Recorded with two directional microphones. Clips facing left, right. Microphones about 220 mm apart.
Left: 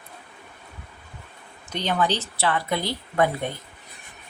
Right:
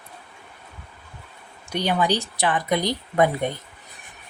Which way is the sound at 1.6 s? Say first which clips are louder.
Right 2 dB; 10° right (ahead or behind).